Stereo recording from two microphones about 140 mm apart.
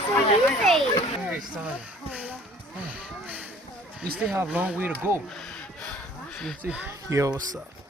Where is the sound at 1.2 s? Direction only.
5° right (ahead or behind).